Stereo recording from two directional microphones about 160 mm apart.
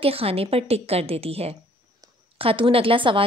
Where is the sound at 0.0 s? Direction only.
35° right (ahead or behind).